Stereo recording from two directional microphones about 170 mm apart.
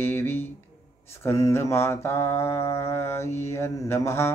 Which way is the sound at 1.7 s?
15° left (ahead or behind).